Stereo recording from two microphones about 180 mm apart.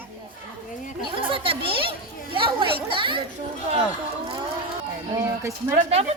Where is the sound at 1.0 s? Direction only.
30° right (ahead or behind).